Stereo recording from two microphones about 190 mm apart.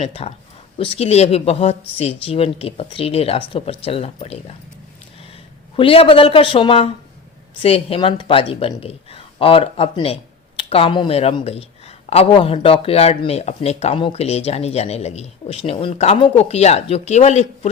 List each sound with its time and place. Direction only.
0.0 s a man's voice: 30° left (ahead or behind)